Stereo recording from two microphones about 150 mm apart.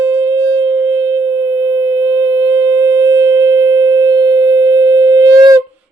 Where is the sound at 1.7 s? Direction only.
25° right (ahead or behind).